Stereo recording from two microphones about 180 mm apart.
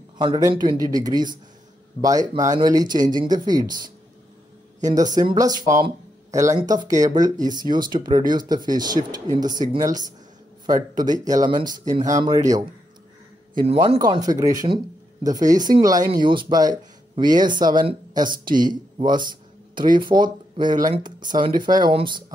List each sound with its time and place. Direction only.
0.2 s speech: 25° right (ahead or behind)
4.8 s speech: 20° right (ahead or behind)
13.7 s speech: 25° right (ahead or behind)